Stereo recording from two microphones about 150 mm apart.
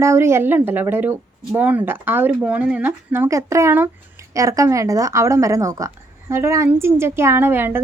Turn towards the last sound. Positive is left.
turn(degrees=-15)  # may be behind; listen again after turning